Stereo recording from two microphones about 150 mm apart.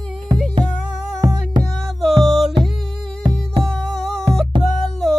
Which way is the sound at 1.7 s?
Centre (ahead or behind).